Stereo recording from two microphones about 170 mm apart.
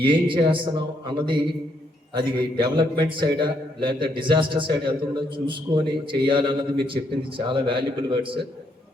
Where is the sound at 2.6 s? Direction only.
25° right (ahead or behind).